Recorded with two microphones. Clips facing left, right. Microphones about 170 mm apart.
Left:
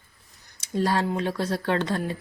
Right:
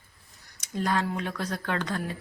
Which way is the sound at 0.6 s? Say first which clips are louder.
Left 4 dB; 30° left (ahead or behind).